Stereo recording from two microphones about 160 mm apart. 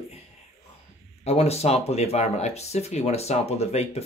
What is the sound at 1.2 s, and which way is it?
Speech, 40° left (ahead or behind).